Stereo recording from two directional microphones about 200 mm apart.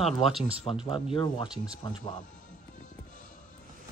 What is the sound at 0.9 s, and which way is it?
Speech, 25° left (ahead or behind).